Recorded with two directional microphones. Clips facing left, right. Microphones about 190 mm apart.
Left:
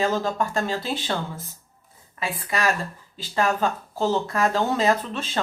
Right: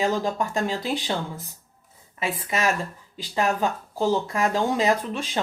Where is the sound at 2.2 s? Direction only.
20° right (ahead or behind).